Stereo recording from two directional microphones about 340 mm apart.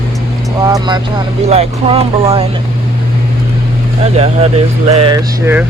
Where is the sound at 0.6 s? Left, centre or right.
Centre.